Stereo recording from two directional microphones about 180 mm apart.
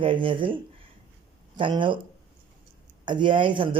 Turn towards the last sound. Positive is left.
turn(degrees=-25)  # may be behind; listen again after turning